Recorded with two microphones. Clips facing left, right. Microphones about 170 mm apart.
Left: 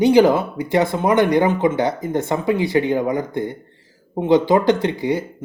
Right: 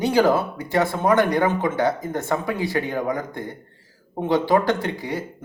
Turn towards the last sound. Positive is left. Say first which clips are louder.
# left 7 dB
turn(degrees=20)  # may be behind; listen again after turning